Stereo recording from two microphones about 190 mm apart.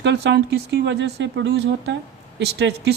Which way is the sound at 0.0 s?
65° right (ahead or behind).